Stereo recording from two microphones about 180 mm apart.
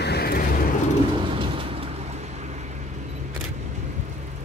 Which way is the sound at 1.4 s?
30° right (ahead or behind).